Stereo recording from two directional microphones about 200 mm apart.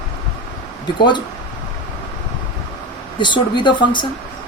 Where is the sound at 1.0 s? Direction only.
20° left (ahead or behind).